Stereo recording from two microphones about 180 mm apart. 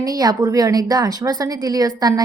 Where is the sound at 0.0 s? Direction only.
20° right (ahead or behind).